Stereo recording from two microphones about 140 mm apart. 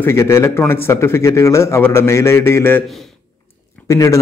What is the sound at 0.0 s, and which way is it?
Speech, 20° left (ahead or behind).